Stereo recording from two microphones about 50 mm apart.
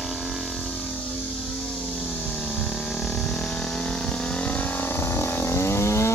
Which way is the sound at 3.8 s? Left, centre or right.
Left.